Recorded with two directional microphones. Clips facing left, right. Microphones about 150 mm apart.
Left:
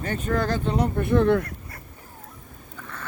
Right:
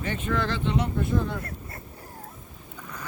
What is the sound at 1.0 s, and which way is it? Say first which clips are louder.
Speech: left 8 dB; 65° left (ahead or behind).